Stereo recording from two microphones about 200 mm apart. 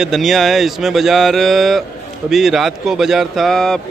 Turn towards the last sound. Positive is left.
turn(degrees=5)  # may be behind; listen again after turning